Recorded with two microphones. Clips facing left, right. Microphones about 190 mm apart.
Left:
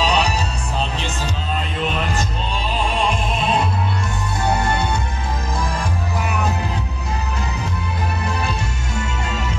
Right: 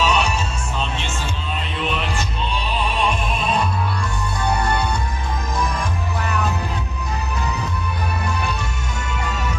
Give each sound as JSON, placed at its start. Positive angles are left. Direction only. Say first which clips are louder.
{"t": 0.0, "sound": "music", "louder": "left 1 dB", "side_deg": 35}